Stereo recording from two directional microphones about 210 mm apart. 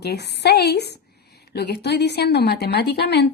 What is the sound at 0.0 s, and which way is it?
A woman's voice, 50° left (ahead or behind).